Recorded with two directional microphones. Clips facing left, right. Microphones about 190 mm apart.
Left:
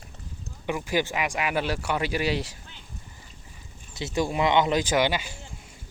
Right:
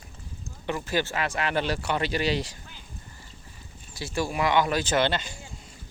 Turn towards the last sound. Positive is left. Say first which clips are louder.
# left 1 dB
turn(degrees=10)  # may be behind; listen again after turning